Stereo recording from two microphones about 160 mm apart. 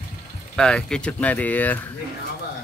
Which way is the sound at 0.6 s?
5° left (ahead or behind).